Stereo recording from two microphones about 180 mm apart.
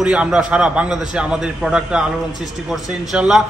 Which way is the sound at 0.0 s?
5° right (ahead or behind).